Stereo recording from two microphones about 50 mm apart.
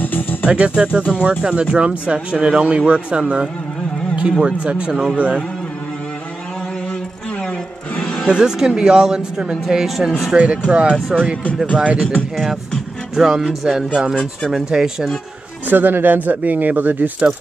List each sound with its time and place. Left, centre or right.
0.0 s music: left
0.5 s speech: right
6.9 s music: left
8.3 s speech: centre
10.3 s speech: right
13.1 s speech: centre
15.6 s speech: right